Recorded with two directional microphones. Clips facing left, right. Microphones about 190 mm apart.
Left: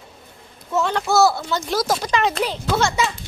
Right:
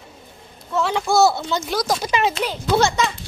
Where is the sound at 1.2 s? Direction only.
25° right (ahead or behind).